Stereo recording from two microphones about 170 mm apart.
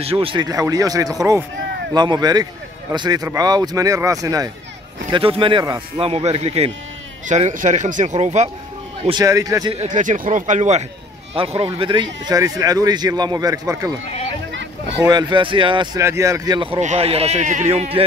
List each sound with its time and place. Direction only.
0.0 s speech: 35° right (ahead or behind)
9.2 s speech: 20° right (ahead or behind)
9.8 s speech: 50° right (ahead or behind)
11.3 s speech: 35° right (ahead or behind); by 13.9 s 20° right (ahead or behind)
15.0 s speech: 25° right (ahead or behind)
16.8 s speech: 40° right (ahead or behind)